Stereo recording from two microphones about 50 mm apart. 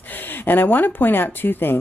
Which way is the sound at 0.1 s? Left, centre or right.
Left.